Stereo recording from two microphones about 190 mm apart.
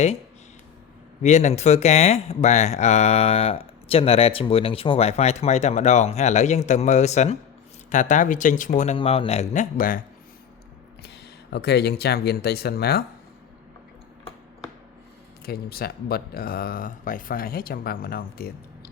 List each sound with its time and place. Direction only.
1.2 s speech: 40° left (ahead or behind)
11.5 s speech: 60° left (ahead or behind)
15.4 s speech: 55° left (ahead or behind)